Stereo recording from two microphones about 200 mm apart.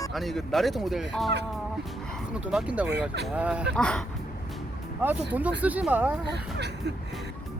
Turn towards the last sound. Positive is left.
turn(degrees=-55)  # may be behind; listen again after turning